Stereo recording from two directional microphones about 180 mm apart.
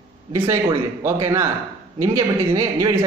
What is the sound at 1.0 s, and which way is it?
A man's voice, 15° right (ahead or behind).